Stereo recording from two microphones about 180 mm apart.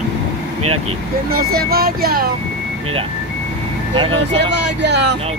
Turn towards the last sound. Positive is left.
turn(degrees=-70)  # may be behind; listen again after turning